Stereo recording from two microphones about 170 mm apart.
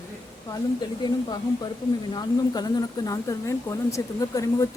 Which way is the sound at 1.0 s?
25° left (ahead or behind).